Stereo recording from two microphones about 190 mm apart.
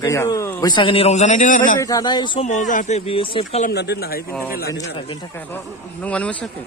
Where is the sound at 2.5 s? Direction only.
40° left (ahead or behind).